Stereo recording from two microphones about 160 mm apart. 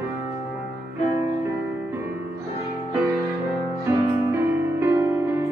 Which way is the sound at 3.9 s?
20° right (ahead or behind).